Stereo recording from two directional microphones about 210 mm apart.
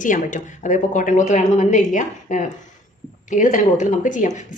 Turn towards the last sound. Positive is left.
turn(degrees=35)  # may be behind; listen again after turning